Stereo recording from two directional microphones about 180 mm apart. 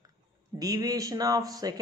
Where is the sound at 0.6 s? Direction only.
20° right (ahead or behind).